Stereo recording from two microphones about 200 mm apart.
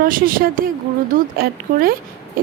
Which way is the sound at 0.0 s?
45° right (ahead or behind).